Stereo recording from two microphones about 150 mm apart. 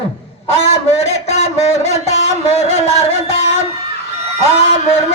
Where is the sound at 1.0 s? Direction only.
45° left (ahead or behind).